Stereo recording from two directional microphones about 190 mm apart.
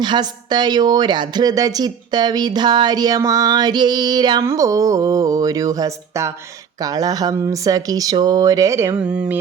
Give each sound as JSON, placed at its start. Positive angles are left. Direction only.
{"t": 0.0, "sound": "speech", "side_deg": -25}